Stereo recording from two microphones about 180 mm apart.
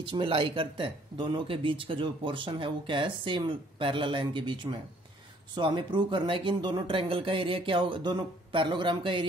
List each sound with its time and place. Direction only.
0.0 s speech: 25° right (ahead or behind)